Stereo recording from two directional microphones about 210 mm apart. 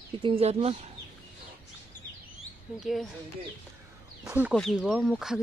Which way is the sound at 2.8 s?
Centre (ahead or behind).